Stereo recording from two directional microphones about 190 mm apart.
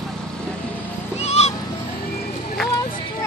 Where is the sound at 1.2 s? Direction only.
35° left (ahead or behind).